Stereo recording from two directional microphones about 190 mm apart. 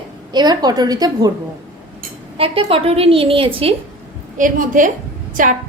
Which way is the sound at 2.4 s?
30° right (ahead or behind).